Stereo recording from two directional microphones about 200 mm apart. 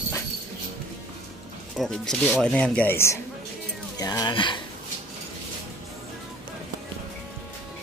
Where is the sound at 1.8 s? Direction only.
5° left (ahead or behind); by 4.6 s 25° left (ahead or behind).